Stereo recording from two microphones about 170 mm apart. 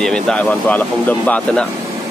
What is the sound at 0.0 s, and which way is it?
Speech, 5° left (ahead or behind).